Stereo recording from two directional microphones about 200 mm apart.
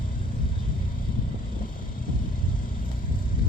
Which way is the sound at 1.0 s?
45° left (ahead or behind).